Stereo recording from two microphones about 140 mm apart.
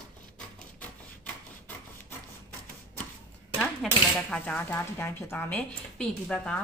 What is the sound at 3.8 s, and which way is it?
Speech, centre (ahead or behind).